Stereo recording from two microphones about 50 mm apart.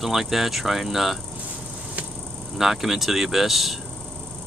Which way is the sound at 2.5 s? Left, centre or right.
Centre.